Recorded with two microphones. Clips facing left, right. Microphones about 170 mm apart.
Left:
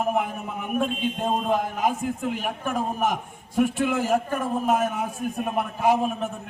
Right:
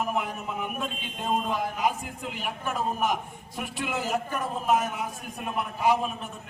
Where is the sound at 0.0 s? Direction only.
50° left (ahead or behind).